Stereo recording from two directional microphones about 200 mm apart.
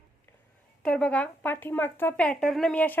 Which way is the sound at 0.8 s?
5° left (ahead or behind).